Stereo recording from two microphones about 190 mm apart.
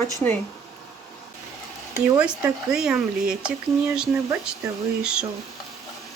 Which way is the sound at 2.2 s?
5° right (ahead or behind).